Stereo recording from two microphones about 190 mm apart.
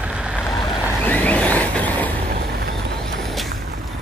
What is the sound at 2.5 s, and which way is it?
Vehicle, 55° right (ahead or behind).